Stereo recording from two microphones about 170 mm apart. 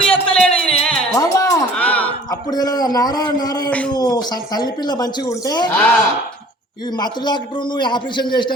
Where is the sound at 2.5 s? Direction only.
25° left (ahead or behind).